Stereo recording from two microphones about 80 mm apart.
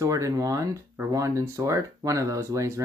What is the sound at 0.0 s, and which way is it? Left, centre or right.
Speech, right.